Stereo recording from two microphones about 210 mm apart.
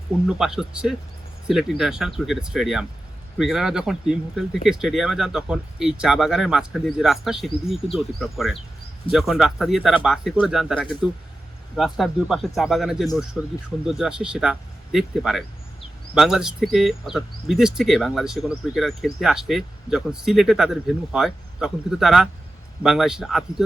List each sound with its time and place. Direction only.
0.3 s speech: centre (ahead or behind)